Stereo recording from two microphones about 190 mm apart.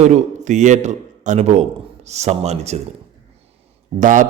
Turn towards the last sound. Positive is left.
turn(degrees=-40)  # may be behind; listen again after turning